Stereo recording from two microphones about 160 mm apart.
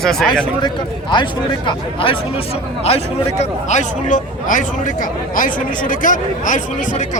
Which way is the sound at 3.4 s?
45° left (ahead or behind).